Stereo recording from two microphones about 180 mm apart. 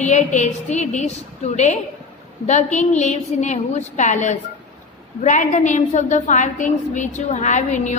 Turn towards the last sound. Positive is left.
turn(degrees=40)  # may be behind; listen again after turning